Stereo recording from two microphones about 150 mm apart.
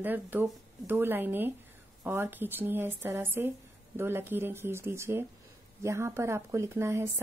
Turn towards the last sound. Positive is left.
turn(degrees=-15)  # may be behind; listen again after turning